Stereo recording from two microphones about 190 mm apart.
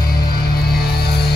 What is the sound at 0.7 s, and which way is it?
Music, 55° left (ahead or behind).